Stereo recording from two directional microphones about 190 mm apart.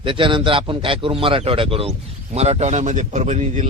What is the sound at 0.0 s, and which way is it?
A man's voice, 25° right (ahead or behind).